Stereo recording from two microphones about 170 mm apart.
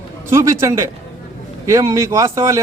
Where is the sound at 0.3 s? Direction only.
15° right (ahead or behind).